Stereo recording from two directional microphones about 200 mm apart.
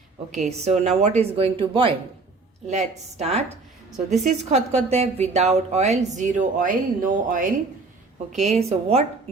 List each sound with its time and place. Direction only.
0.5 s a woman's voice: 35° right (ahead or behind)